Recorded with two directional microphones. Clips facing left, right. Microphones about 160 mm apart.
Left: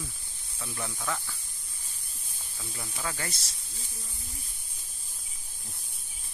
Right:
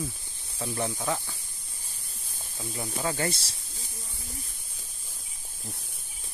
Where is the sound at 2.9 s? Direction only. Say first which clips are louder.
Right 7 dB; 35° right (ahead or behind).